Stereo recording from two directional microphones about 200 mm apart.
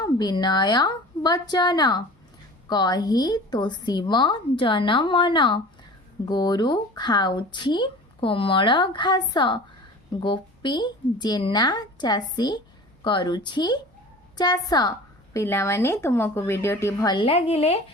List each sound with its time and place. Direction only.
0.0 s a woman's voice: 20° left (ahead or behind)